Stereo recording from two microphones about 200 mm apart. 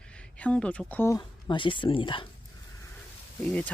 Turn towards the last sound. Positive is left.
turn(degrees=5)  # may be behind; listen again after turning